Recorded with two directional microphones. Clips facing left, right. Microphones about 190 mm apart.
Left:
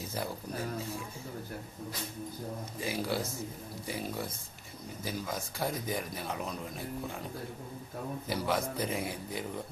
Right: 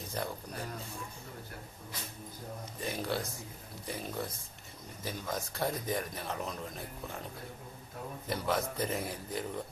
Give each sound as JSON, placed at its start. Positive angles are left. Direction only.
{"t": 2.8, "sound": "speech", "side_deg": 5}
{"t": 8.3, "sound": "speech", "side_deg": 0}